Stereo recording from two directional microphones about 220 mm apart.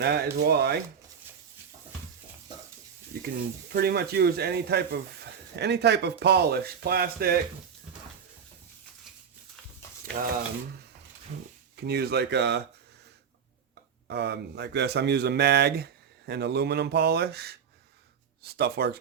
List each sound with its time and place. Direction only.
0.0 s speech: 45° right (ahead or behind)
3.7 s speech: 45° right (ahead or behind)
11.9 s speech: 45° right (ahead or behind)
14.1 s speech: 50° right (ahead or behind)